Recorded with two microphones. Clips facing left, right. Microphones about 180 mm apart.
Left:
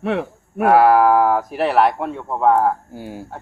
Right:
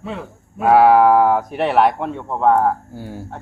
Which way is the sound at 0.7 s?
Centre (ahead or behind).